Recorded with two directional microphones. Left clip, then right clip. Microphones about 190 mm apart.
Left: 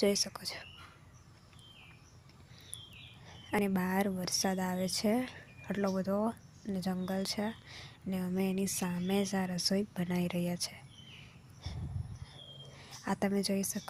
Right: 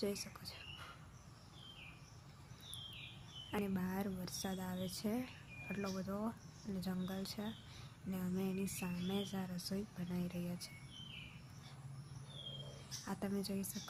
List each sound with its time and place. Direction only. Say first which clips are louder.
0.0 s a woman's voice: left 12 dB; 40° left (ahead or behind)
3.5 s a woman's voice: left 10 dB; 40° left (ahead or behind)
13.1 s a woman's voice: left 11 dB; 40° left (ahead or behind)